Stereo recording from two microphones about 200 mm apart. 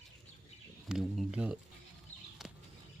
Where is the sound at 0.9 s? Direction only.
5° right (ahead or behind).